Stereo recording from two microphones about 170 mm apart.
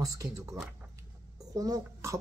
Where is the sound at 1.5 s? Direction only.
20° right (ahead or behind).